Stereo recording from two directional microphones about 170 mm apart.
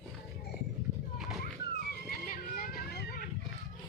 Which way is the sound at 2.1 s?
55° left (ahead or behind).